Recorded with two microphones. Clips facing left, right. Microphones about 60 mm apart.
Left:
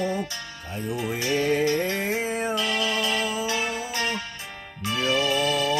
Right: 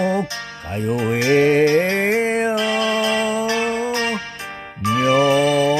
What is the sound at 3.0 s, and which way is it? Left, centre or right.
Music, right.